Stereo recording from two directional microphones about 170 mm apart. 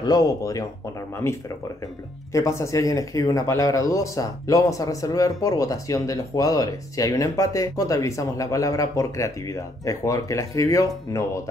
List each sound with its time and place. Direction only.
0.0 s speech: 25° left (ahead or behind)
2.3 s speech: 20° left (ahead or behind)